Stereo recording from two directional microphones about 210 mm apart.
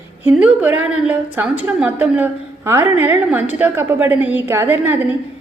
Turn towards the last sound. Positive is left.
turn(degrees=-10)  # may be behind; listen again after turning